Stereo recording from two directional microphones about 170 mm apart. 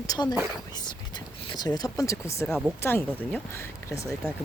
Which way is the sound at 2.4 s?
5° right (ahead or behind).